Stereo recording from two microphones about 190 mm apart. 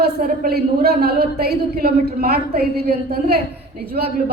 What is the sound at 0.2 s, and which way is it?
A woman's voice, 55° right (ahead or behind).